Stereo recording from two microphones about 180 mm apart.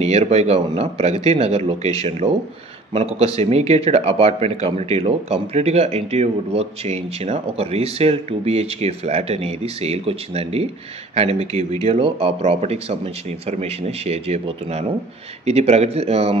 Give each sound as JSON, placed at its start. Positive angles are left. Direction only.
{"t": 0.0, "sound": "speech", "side_deg": -35}